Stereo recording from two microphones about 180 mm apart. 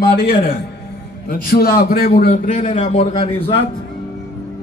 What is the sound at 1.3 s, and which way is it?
A man's voice, 55° left (ahead or behind).